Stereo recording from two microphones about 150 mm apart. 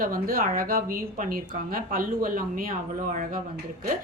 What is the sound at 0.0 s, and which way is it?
A woman's voice, 70° right (ahead or behind).